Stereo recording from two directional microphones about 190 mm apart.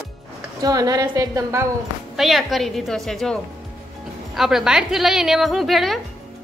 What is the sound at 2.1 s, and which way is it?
A woman's voice, centre (ahead or behind).